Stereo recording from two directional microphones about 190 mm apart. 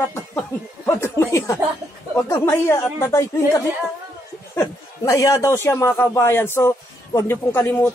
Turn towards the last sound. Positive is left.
turn(degrees=10)  # may be behind; listen again after turning